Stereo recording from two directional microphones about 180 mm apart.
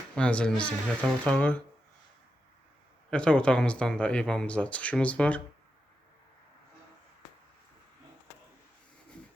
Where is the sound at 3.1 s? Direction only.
5° left (ahead or behind).